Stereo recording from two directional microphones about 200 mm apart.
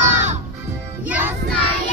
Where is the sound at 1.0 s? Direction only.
5° right (ahead or behind).